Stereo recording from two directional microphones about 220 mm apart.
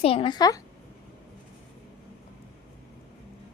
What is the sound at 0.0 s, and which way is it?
Speech, 25° left (ahead or behind).